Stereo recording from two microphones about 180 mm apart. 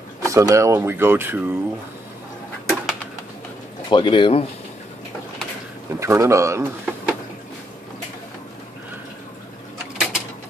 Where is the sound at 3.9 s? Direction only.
25° left (ahead or behind).